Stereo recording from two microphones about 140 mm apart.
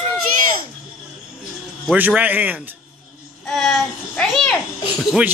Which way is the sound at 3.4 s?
5° left (ahead or behind).